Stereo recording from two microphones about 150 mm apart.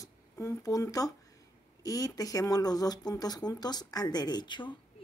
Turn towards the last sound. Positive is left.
turn(degrees=30)  # may be behind; listen again after turning